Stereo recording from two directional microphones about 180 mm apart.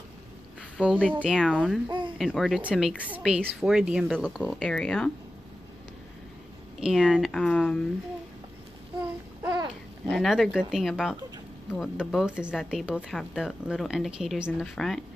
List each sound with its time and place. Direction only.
0.7 s speech: 5° right (ahead or behind)
1.9 s a sound: 25° right (ahead or behind)
2.1 s speech: centre (ahead or behind)
6.8 s speech: centre (ahead or behind)
9.4 s a sound: 20° right (ahead or behind)
10.0 s speech: centre (ahead or behind)